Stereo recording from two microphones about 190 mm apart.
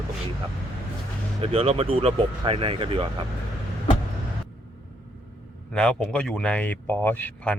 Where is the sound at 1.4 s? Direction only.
30° right (ahead or behind).